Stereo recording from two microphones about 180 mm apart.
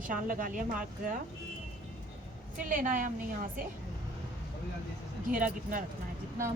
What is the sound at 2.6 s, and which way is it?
A woman's voice, 45° right (ahead or behind).